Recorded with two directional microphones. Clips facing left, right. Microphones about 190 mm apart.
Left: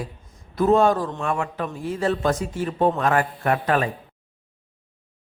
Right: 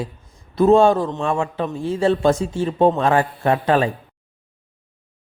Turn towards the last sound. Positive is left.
turn(degrees=-30)  # may be behind; listen again after turning